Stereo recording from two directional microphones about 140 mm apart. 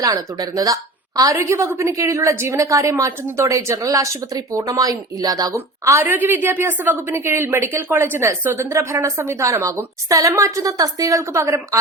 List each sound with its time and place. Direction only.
0.0 s a woman's voice: 25° right (ahead or behind)